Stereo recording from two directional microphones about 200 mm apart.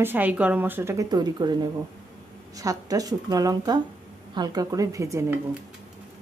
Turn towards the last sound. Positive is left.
turn(degrees=-15)  # may be behind; listen again after turning